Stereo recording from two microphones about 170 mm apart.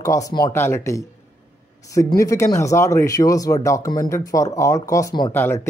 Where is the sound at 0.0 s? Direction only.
20° left (ahead or behind).